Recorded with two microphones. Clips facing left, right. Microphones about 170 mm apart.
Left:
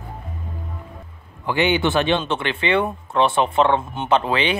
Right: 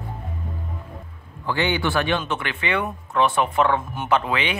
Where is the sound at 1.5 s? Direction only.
20° left (ahead or behind).